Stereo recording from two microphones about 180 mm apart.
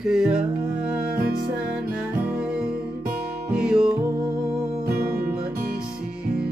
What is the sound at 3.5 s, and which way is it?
Music, 5° right (ahead or behind).